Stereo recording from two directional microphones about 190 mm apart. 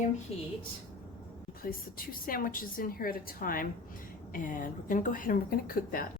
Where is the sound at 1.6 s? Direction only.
50° left (ahead or behind).